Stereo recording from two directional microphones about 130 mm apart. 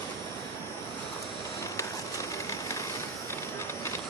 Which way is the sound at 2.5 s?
25° left (ahead or behind).